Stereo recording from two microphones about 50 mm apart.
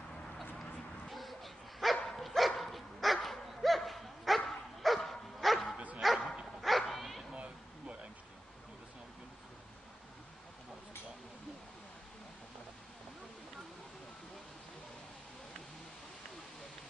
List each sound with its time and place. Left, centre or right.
0.6 s dog: centre
5.4 s bow-wow: centre
5.9 s dog: centre
7.3 s a sound: right